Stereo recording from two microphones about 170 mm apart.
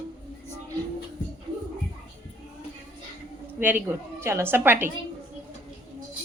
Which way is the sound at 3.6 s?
10° right (ahead or behind).